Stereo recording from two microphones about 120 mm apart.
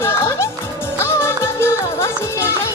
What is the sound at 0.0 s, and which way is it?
Music, 25° left (ahead or behind).